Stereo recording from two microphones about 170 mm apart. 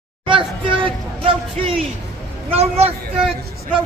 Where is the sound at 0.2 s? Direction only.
30° right (ahead or behind).